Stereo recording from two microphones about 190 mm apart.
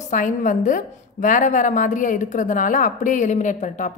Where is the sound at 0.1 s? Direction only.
45° left (ahead or behind).